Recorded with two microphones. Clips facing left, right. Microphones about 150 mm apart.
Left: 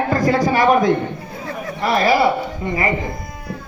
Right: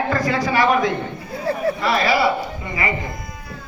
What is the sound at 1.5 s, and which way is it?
Chatter, 35° right (ahead or behind).